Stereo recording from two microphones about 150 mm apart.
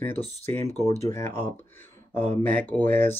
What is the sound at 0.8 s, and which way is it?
Speech, 20° left (ahead or behind).